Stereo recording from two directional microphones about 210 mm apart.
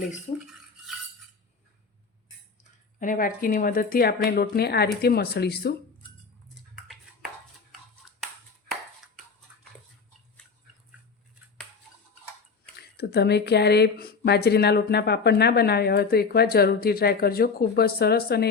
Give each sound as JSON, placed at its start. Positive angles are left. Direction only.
{"t": 0.3, "sound": "dishes", "side_deg": 30}
{"t": 3.0, "sound": "speech", "side_deg": 40}
{"t": 6.5, "sound": "cutlery", "side_deg": 0}
{"t": 13.0, "sound": "speech", "side_deg": 50}